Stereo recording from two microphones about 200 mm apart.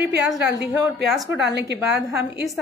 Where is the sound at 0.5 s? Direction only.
15° right (ahead or behind).